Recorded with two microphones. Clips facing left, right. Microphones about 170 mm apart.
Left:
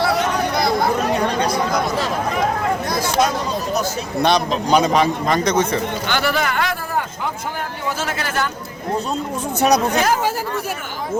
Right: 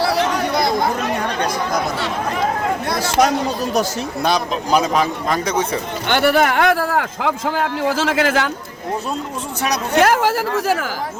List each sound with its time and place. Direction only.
4.2 s a man's voice: 5° right (ahead or behind)
6.1 s a man's voice: 60° right (ahead or behind); by 8.4 s 90° right
9.6 s speech: 30° left (ahead or behind)
9.9 s a man's voice: 75° right (ahead or behind); by 10.8 s 90° right